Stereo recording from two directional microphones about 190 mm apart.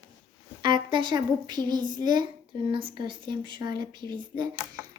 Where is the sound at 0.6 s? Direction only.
25° right (ahead or behind).